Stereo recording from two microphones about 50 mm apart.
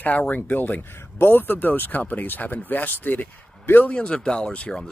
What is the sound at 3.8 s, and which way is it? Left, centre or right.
Speech, left.